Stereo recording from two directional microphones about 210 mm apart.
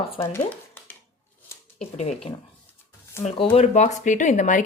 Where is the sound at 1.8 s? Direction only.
30° left (ahead or behind).